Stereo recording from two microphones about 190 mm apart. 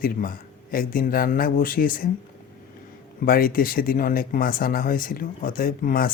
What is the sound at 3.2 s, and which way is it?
Speech, 50° left (ahead or behind).